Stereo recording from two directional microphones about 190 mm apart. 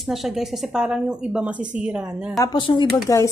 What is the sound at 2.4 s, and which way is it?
Speech, 25° left (ahead or behind).